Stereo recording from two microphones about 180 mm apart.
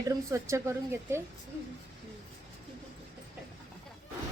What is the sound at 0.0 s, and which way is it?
A woman's voice, 20° right (ahead or behind).